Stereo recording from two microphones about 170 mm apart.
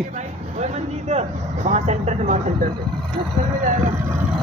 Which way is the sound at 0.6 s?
40° right (ahead or behind).